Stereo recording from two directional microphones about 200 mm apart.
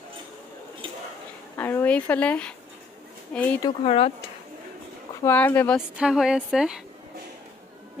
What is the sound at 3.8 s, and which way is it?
Speech, 30° left (ahead or behind).